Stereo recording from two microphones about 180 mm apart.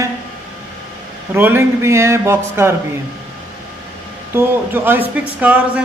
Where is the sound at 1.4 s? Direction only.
10° right (ahead or behind).